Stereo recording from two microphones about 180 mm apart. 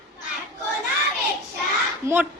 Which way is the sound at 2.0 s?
10° right (ahead or behind).